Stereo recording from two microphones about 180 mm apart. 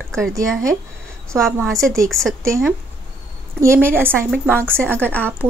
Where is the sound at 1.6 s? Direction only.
15° right (ahead or behind).